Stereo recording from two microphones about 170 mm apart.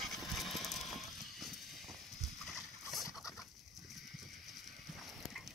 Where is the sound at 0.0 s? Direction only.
Centre (ahead or behind).